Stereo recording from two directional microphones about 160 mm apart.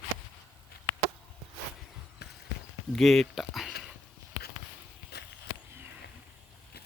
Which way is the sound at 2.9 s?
Centre (ahead or behind).